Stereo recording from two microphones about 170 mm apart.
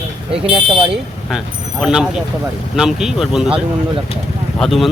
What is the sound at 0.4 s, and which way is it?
Speech, 30° right (ahead or behind).